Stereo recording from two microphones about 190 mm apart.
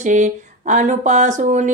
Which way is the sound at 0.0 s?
40° right (ahead or behind).